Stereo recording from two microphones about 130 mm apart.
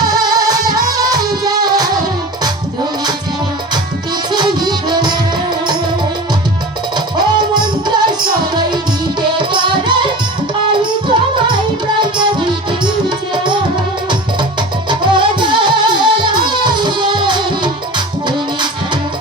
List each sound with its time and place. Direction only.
0.2 s music: 30° right (ahead or behind)
4.3 s music: 35° right (ahead or behind)
7.2 s music: 35° right (ahead or behind)
14.8 s music: 35° right (ahead or behind)